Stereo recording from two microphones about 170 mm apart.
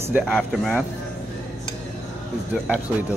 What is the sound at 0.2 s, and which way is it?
Speech, centre (ahead or behind).